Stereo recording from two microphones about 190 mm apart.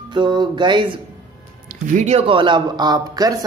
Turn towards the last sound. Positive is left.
turn(degrees=-20)  # may be behind; listen again after turning